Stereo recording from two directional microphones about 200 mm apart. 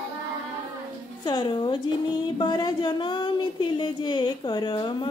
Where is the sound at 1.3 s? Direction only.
25° left (ahead or behind).